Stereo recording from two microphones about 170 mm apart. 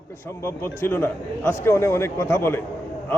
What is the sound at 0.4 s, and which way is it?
A man's voice, 15° left (ahead or behind).